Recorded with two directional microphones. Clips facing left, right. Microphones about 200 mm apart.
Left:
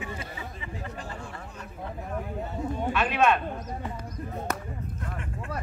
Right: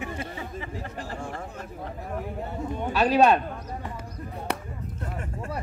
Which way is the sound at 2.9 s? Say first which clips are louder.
Right 5 dB; 35° right (ahead or behind).